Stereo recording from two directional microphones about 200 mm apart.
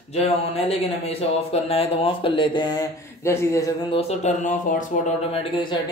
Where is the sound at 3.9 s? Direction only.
35° left (ahead or behind).